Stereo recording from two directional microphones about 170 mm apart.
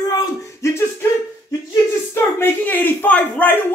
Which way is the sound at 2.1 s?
15° left (ahead or behind).